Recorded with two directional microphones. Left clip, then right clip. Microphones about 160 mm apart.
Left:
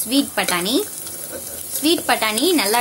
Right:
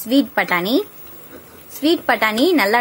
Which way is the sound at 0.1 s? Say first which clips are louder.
Right 3 dB; 35° right (ahead or behind).